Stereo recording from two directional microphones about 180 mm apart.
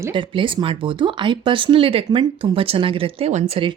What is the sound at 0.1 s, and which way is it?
Speech, 30° right (ahead or behind).